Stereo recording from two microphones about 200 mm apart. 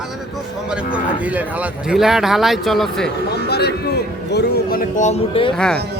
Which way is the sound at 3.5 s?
55° left (ahead or behind).